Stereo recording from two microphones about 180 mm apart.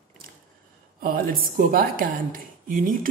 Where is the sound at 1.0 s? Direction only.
50° right (ahead or behind).